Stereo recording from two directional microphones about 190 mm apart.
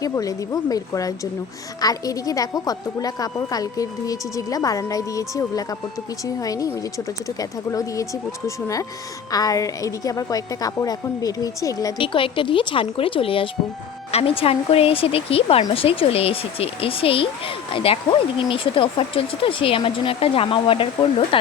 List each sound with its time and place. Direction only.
0.0 s a woman's voice: 20° left (ahead or behind)